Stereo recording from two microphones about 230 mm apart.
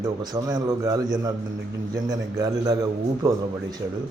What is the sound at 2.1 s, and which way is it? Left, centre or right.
Speech, centre.